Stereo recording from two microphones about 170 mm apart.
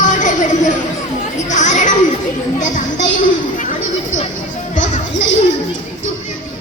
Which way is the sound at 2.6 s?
45° left (ahead or behind).